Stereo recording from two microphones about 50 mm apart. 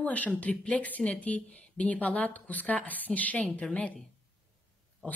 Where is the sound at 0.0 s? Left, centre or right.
Left.